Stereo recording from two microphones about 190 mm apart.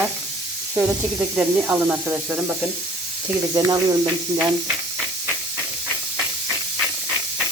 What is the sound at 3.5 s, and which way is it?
Speech, 20° right (ahead or behind).